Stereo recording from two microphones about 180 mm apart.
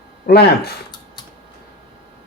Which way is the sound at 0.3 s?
60° left (ahead or behind).